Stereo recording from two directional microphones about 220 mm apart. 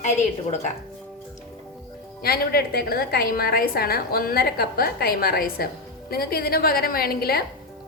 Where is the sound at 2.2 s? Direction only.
45° left (ahead or behind).